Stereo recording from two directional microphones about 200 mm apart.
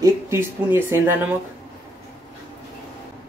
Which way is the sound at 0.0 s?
10° right (ahead or behind).